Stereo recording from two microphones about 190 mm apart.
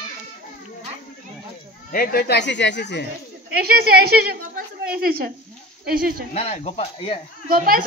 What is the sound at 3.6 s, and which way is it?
Speech, 55° right (ahead or behind).